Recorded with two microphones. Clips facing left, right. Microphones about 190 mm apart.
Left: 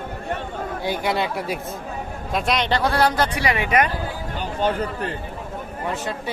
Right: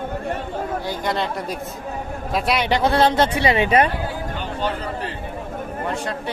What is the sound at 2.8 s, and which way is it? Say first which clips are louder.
Speech: right 5 dB; 25° right (ahead or behind).